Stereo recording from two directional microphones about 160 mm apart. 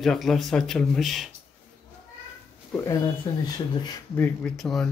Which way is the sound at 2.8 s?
20° left (ahead or behind).